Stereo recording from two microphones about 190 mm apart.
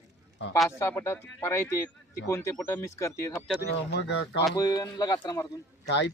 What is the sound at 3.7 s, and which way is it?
Speech, 65° left (ahead or behind).